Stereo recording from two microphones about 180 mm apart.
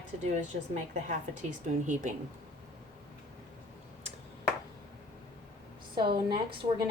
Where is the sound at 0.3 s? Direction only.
45° right (ahead or behind).